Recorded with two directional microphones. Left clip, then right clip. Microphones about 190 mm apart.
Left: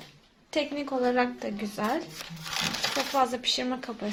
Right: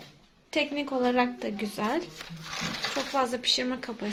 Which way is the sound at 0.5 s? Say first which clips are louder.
Right 1 dB; 5° right (ahead or behind).